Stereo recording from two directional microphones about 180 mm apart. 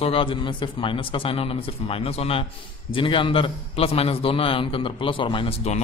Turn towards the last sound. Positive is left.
turn(degrees=35)  # may be behind; listen again after turning